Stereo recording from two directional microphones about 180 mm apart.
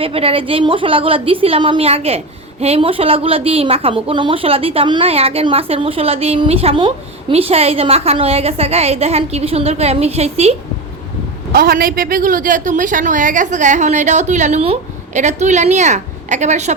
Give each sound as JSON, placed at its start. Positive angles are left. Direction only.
{"t": 0.0, "sound": "a woman's voice", "side_deg": -30}
{"t": 11.5, "sound": "a woman's voice", "side_deg": -55}